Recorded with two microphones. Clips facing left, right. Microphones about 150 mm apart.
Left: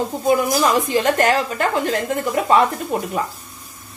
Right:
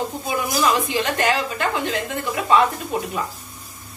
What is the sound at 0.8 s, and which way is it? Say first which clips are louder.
A woman's voice: left 4 dB; 45° left (ahead or behind).